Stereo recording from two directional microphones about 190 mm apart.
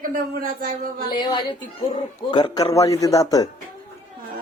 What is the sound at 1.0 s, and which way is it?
Speech, 25° left (ahead or behind).